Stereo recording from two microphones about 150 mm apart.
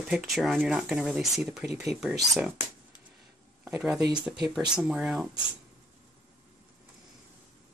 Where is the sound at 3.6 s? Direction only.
5° right (ahead or behind).